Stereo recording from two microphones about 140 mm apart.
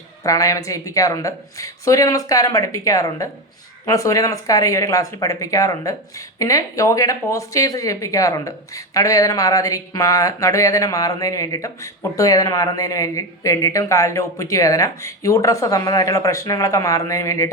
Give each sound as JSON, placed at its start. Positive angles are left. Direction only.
{"t": 0.2, "sound": "speech", "side_deg": 25}